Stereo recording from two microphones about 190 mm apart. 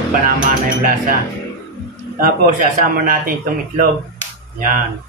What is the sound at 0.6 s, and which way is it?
Speech, 45° right (ahead or behind).